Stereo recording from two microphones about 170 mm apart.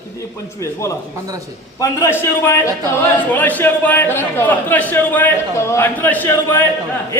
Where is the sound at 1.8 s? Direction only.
15° left (ahead or behind).